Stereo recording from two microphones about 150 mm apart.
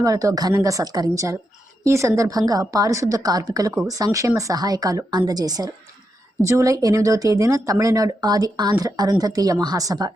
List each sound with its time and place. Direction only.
0.0 s speech: 20° right (ahead or behind)